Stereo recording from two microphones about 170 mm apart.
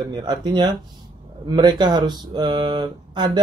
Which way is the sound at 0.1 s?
25° right (ahead or behind).